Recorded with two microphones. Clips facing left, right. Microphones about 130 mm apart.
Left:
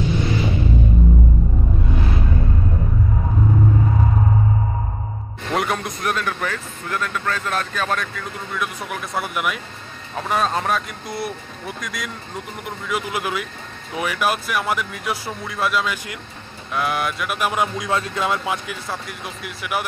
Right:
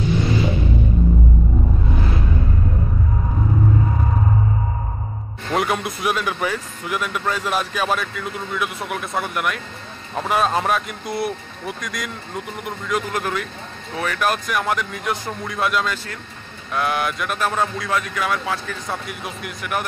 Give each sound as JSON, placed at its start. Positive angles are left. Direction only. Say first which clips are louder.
{"t": 5.5, "sound": "speech", "louder": "right 1 dB", "side_deg": 0}
{"t": 17.4, "sound": "speech", "louder": "left 1 dB", "side_deg": 15}
{"t": 18.9, "sound": "speech", "louder": "right 3 dB", "side_deg": 0}